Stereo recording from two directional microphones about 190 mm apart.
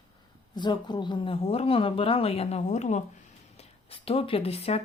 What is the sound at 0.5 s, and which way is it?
Speech, 20° left (ahead or behind).